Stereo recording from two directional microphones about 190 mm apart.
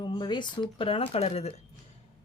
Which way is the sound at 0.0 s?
25° left (ahead or behind).